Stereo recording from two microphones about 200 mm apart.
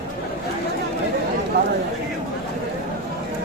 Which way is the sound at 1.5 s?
55° right (ahead or behind).